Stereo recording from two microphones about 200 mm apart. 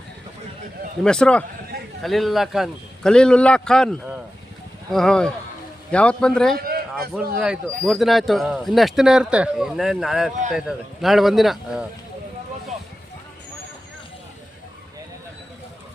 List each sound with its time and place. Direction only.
1.0 s speech: 5° left (ahead or behind)
6.6 s a sound: 50° right (ahead or behind)
7.3 s speech: 5° right (ahead or behind)